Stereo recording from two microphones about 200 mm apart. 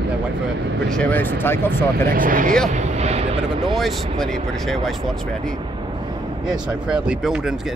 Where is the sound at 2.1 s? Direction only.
45° right (ahead or behind).